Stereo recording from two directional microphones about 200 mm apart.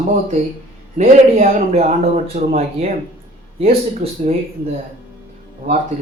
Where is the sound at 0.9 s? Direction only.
35° right (ahead or behind).